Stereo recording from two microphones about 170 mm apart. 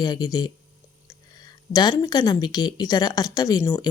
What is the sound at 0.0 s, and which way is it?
Speech, 25° left (ahead or behind).